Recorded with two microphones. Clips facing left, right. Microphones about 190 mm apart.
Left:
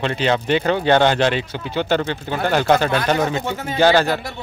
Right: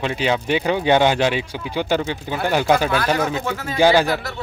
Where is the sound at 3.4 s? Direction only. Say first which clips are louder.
Left 1 dB; 20° left (ahead or behind).